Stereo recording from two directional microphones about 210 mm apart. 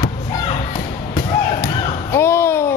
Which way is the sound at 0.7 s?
25° left (ahead or behind).